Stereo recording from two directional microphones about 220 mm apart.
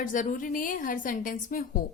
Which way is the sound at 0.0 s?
35° left (ahead or behind).